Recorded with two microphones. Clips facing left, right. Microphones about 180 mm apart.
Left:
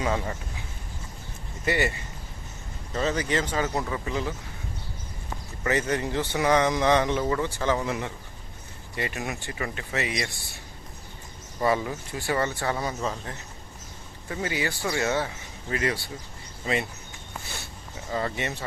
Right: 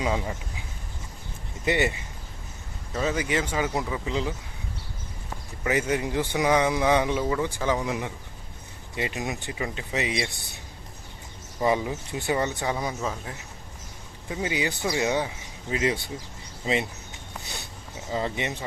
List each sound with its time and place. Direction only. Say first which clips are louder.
0.0 s a man's voice: even; 10° right (ahead or behind)
1.6 s a man's voice: right 1 dB; 20° right (ahead or behind)
5.6 s a man's voice: right 1 dB; 10° right (ahead or behind)
11.6 s a man's voice: right 1 dB; 15° right (ahead or behind)
17.4 s dog: right 1 dB; 20° right (ahead or behind)
18.1 s a man's voice: right 1 dB; 15° right (ahead or behind)